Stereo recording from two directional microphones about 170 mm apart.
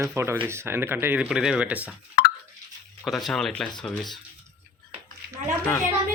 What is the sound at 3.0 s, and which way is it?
Speech, centre (ahead or behind).